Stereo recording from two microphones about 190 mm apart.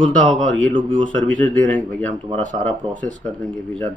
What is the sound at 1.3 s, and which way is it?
Speech, 5° left (ahead or behind).